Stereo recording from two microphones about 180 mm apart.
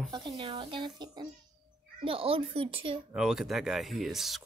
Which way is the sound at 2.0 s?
30° right (ahead or behind).